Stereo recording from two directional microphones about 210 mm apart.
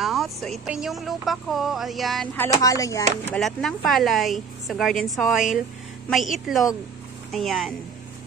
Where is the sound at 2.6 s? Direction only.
15° left (ahead or behind).